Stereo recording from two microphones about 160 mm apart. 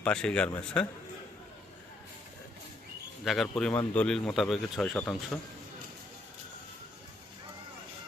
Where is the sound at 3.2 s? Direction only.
Centre (ahead or behind).